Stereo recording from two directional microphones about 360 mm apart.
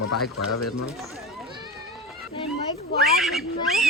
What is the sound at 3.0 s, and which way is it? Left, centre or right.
Speech, centre.